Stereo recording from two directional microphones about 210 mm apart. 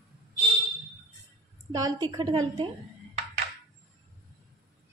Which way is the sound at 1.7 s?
15° right (ahead or behind).